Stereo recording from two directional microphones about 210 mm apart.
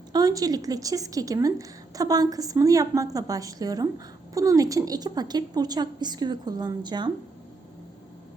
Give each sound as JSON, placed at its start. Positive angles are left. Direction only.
{"t": 0.1, "sound": "a woman's voice", "side_deg": -15}